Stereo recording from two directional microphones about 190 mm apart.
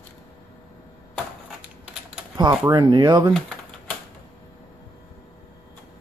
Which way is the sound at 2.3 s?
20° right (ahead or behind).